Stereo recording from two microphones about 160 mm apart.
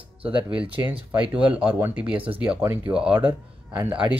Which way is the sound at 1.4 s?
5° right (ahead or behind).